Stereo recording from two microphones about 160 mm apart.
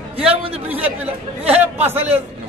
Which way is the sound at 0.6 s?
10° right (ahead or behind).